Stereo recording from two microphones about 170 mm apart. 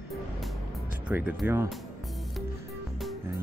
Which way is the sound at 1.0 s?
10° right (ahead or behind).